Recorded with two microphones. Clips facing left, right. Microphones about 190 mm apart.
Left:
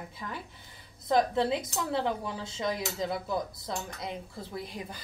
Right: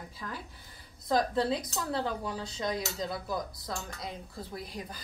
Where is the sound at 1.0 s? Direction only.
20° left (ahead or behind).